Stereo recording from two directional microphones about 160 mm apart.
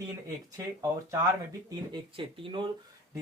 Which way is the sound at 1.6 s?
30° right (ahead or behind).